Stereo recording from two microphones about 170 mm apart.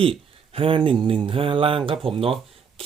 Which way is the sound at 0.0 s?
35° right (ahead or behind).